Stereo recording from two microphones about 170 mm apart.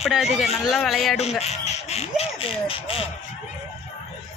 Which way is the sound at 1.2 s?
40° left (ahead or behind).